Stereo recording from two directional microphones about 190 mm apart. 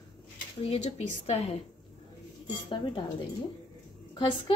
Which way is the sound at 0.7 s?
35° left (ahead or behind).